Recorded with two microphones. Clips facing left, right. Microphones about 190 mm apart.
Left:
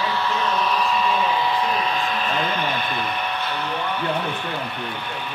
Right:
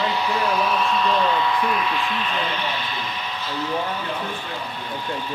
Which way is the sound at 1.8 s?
40° left (ahead or behind).